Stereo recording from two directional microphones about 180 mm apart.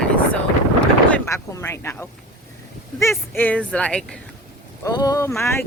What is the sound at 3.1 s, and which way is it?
Speech, 5° left (ahead or behind).